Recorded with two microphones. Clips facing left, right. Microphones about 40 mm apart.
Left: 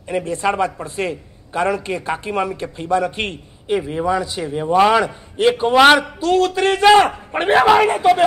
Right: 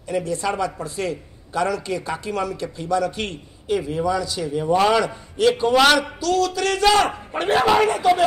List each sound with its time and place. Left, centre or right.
0.1 s a man's voice: left